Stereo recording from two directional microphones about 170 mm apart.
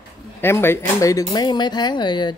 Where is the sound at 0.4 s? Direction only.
15° left (ahead or behind).